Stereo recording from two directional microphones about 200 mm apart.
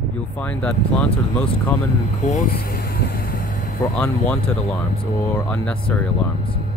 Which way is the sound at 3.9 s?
5° left (ahead or behind).